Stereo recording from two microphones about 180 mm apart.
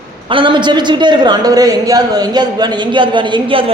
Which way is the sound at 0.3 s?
25° right (ahead or behind).